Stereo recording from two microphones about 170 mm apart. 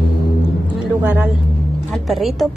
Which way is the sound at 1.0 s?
10° right (ahead or behind).